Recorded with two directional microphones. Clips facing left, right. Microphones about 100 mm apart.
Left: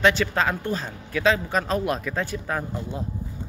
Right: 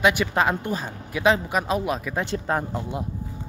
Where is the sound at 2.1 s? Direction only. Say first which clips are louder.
Right 2 dB; 20° right (ahead or behind).